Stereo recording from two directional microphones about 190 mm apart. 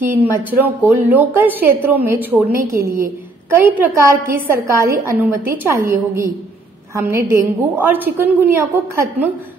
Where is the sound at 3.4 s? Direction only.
10° right (ahead or behind).